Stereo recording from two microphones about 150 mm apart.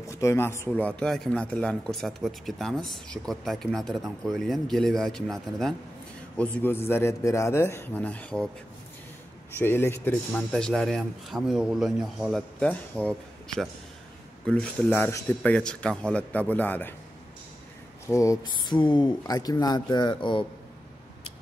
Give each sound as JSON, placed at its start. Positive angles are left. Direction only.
{"t": 0.0, "sound": "a man's voice", "side_deg": 20}
{"t": 9.6, "sound": "a man's voice", "side_deg": 15}
{"t": 10.5, "sound": "a man's voice", "side_deg": 5}
{"t": 18.0, "sound": "speech", "side_deg": 20}